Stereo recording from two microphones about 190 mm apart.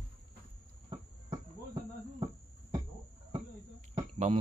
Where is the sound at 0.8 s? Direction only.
20° right (ahead or behind).